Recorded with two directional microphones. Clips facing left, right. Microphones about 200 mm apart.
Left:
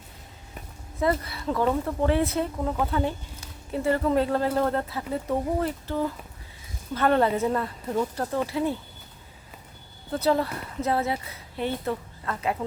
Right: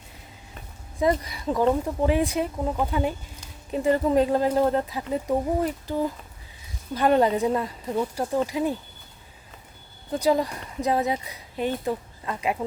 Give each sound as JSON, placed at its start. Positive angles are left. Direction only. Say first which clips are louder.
{"t": 0.9, "sound": "speech", "louder": "right 2 dB", "side_deg": -15}
{"t": 10.1, "sound": "speech", "louder": "right 1 dB", "side_deg": -15}